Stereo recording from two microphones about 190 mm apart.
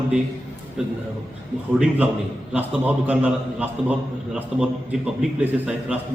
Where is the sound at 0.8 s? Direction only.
5° right (ahead or behind).